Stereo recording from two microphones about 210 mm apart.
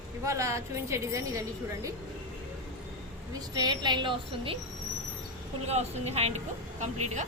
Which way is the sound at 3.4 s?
20° right (ahead or behind).